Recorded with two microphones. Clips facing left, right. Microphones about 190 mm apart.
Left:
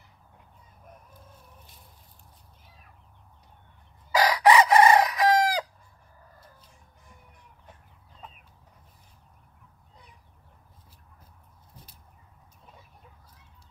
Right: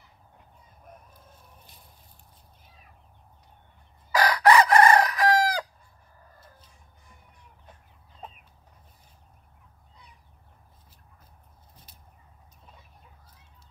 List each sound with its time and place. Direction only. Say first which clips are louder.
4.1 s chicken: even; 20° left (ahead or behind)